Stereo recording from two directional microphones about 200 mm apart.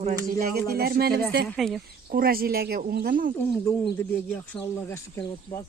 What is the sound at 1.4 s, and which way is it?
Speech, centre (ahead or behind).